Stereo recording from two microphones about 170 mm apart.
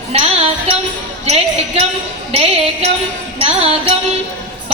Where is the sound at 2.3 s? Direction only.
35° right (ahead or behind).